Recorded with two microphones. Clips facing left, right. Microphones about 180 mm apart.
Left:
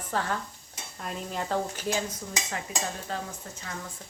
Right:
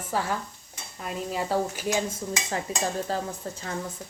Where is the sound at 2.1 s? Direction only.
25° right (ahead or behind).